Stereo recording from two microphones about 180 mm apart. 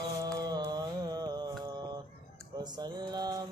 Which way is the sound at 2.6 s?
25° right (ahead or behind).